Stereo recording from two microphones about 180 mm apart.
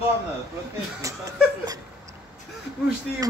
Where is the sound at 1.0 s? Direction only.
20° right (ahead or behind).